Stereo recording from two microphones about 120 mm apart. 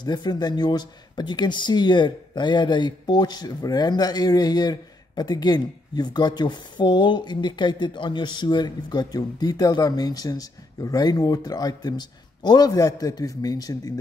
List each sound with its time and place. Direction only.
0.0 s speech: 35° left (ahead or behind)